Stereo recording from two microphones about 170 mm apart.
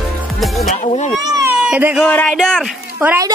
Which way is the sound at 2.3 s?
Centre (ahead or behind).